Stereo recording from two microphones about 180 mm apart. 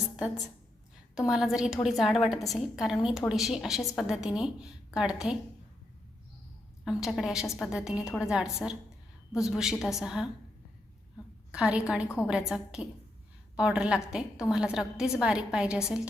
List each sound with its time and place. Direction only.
1.3 s a woman's voice: centre (ahead or behind)
6.8 s a woman's voice: centre (ahead or behind)
11.5 s a woman's voice: 5° right (ahead or behind)
12.0 s a woman's voice: 15° left (ahead or behind)
12.3 s a woman's voice: centre (ahead or behind)